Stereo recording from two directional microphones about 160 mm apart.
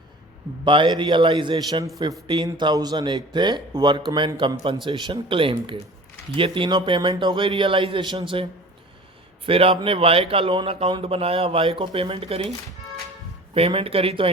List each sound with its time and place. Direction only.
0.6 s a man's voice: 30° right (ahead or behind)
9.5 s a man's voice: 35° right (ahead or behind)